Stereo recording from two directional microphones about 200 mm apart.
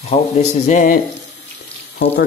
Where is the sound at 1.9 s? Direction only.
55° left (ahead or behind).